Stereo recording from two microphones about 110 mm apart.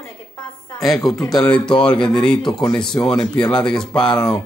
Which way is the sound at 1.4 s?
10° left (ahead or behind).